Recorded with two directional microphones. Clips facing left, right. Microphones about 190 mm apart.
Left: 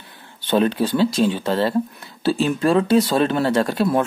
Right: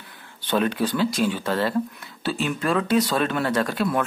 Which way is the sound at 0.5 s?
30° left (ahead or behind).